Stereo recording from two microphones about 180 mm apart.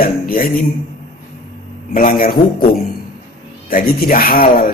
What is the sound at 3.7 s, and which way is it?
Speech, 50° left (ahead or behind).